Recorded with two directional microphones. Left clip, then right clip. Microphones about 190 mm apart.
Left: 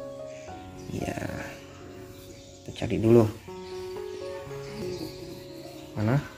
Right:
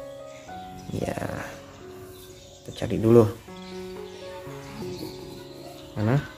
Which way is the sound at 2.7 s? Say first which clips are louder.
Right 3 dB; 15° right (ahead or behind).